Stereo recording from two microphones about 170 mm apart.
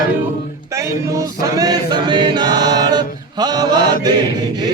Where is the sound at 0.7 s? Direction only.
15° right (ahead or behind).